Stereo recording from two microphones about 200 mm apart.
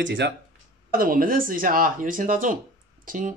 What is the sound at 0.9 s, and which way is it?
Speech, 45° right (ahead or behind).